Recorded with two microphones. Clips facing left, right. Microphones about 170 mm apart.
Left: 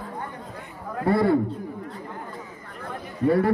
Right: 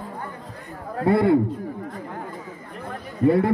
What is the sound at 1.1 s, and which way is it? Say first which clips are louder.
Speech: right 2 dB; 20° right (ahead or behind).